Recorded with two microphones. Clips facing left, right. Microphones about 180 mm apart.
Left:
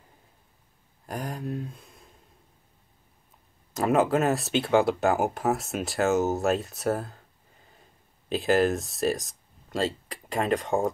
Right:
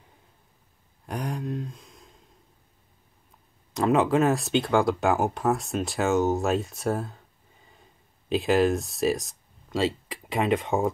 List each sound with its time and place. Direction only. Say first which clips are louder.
1.0 s speech: right 2 dB; centre (ahead or behind)
3.7 s speech: right 1 dB; centre (ahead or behind)